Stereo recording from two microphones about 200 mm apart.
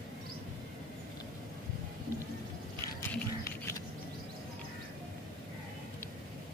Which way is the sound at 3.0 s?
10° left (ahead or behind).